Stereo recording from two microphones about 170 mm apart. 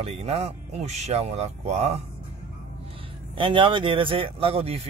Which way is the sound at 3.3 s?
30° right (ahead or behind).